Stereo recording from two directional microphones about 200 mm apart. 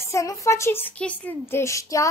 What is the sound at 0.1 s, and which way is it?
A woman's voice, 15° left (ahead or behind).